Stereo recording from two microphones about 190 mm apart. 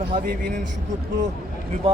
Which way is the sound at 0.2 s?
45° right (ahead or behind).